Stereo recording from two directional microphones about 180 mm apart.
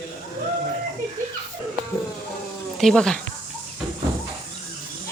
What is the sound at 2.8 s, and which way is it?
Speech, centre (ahead or behind).